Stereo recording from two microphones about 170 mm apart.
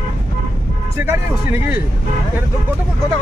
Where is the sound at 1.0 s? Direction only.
15° right (ahead or behind).